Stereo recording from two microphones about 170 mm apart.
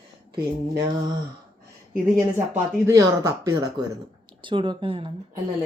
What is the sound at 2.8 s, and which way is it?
Speech, 20° right (ahead or behind).